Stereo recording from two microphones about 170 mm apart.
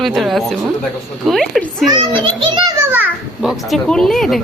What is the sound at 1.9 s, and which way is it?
Speech, 30° right (ahead or behind).